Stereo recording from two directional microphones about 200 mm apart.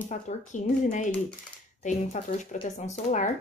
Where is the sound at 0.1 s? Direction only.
40° left (ahead or behind).